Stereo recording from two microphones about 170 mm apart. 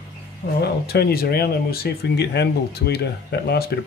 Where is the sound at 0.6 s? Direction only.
70° left (ahead or behind).